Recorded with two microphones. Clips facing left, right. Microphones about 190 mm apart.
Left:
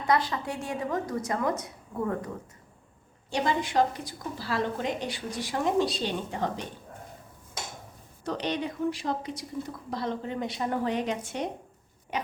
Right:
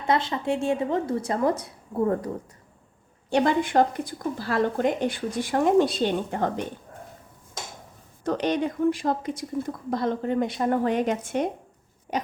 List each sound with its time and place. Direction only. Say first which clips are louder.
0.1 s a woman's voice: right 3 dB; 25° right (ahead or behind)
3.2 s speech: right 6 dB; 55° right (ahead or behind)
8.2 s speech: right 6 dB; 50° right (ahead or behind)
12.1 s pig: right 4 dB; 40° right (ahead or behind)